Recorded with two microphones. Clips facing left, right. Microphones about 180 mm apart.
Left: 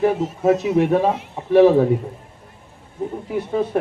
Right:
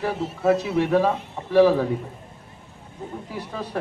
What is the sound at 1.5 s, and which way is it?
Speech, 20° left (ahead or behind).